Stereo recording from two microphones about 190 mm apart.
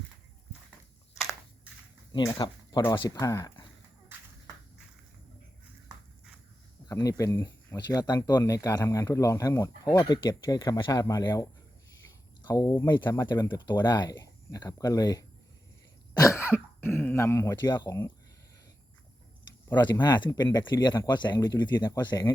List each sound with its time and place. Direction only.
2.1 s speech: 20° left (ahead or behind)
6.8 s speech: 20° left (ahead or behind)
12.5 s speech: 20° left (ahead or behind)
19.6 s speech: 20° left (ahead or behind)